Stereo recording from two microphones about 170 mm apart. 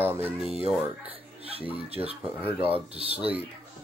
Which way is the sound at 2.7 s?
35° right (ahead or behind).